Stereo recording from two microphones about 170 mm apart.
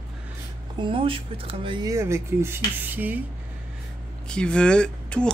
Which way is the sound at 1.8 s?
15° right (ahead or behind).